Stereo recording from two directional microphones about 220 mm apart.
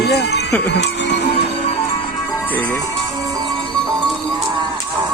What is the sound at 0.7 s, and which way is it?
Music, 50° left (ahead or behind).